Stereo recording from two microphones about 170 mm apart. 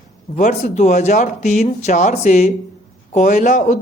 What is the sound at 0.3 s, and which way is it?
Speech, 50° left (ahead or behind).